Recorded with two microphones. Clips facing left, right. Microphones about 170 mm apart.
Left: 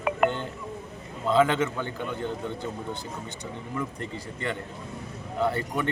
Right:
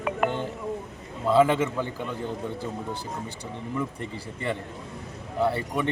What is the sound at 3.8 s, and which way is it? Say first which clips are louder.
Speech: right 1 dB; 5° right (ahead or behind).